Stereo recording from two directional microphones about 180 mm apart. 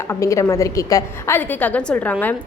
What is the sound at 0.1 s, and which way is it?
A woman's voice, 15° left (ahead or behind).